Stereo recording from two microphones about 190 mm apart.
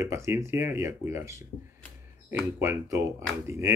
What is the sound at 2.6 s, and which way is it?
Speech, 15° right (ahead or behind).